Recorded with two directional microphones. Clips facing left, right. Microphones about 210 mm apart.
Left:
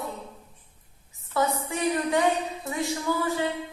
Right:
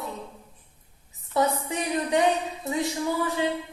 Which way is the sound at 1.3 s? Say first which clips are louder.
Right 2 dB; 20° right (ahead or behind).